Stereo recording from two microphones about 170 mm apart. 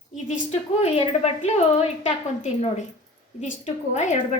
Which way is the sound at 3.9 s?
45° left (ahead or behind).